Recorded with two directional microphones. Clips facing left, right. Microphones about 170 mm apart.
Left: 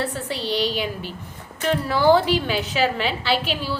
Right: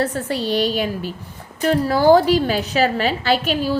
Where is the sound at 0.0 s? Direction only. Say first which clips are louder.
Right 5 dB; 40° right (ahead or behind).